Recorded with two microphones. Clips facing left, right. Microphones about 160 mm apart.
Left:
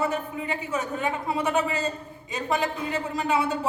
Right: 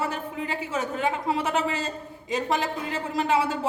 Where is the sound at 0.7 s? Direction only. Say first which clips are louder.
Right 2 dB; 90° right.